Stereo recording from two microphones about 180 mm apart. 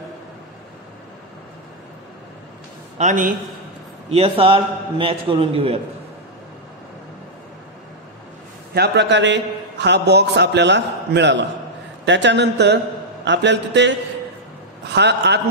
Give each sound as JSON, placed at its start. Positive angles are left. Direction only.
{"t": 3.0, "sound": "a man's voice", "side_deg": -45}
{"t": 4.1, "sound": "a man's voice", "side_deg": -30}
{"t": 8.7, "sound": "a man's voice", "side_deg": -70}